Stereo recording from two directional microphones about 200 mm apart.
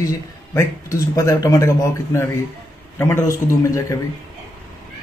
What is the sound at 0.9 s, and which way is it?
Speech, 15° left (ahead or behind).